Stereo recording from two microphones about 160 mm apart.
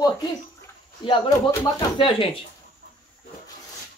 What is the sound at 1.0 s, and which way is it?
Speech, 30° left (ahead or behind).